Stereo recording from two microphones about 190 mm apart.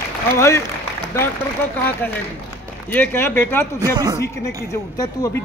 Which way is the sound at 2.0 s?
10° left (ahead or behind).